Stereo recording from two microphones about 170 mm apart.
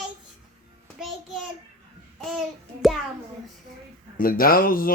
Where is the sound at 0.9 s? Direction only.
Centre (ahead or behind).